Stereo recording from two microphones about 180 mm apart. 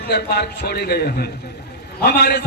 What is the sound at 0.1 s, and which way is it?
A man's voice, 65° left (ahead or behind).